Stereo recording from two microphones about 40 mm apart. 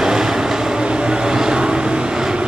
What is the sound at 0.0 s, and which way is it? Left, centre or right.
Vehicle, centre.